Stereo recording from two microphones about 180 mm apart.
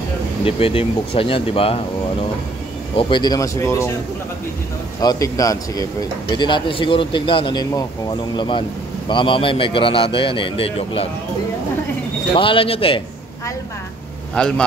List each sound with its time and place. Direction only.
0.5 s speech: 30° left (ahead or behind)
3.0 s speech: 25° left (ahead or behind)
5.0 s speech: 20° left (ahead or behind)
12.4 s speech: 30° left (ahead or behind)
14.4 s a man's voice: 5° left (ahead or behind)